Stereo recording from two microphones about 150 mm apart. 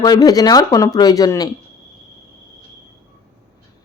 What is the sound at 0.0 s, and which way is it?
A woman's voice, 25° left (ahead or behind).